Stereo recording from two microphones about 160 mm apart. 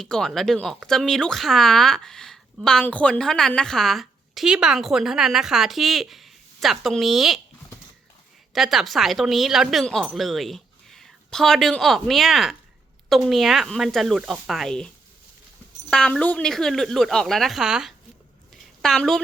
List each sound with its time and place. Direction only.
0.0 s a woman's voice: 5° left (ahead or behind)
8.5 s a woman's voice: centre (ahead or behind)
15.9 s a woman's voice: 5° left (ahead or behind)
18.5 s a sound: centre (ahead or behind)